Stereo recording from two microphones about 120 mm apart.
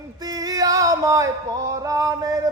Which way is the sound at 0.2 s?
30° right (ahead or behind).